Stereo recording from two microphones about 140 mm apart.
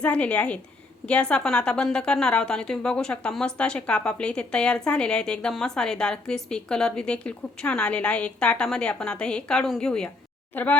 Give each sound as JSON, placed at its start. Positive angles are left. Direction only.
{"t": 0.0, "sound": "a woman's voice", "side_deg": 10}